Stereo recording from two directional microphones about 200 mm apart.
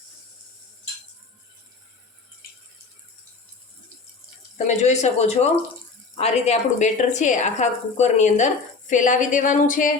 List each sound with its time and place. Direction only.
4.5 s speech: 35° left (ahead or behind)